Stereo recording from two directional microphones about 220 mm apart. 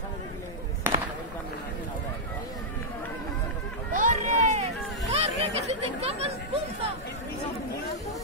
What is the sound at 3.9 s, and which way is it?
Run, 35° right (ahead or behind).